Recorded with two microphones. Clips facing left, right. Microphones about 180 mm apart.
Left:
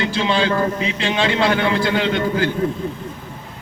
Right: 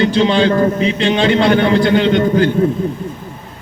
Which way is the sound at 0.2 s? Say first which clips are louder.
Right 4 dB; 30° right (ahead or behind).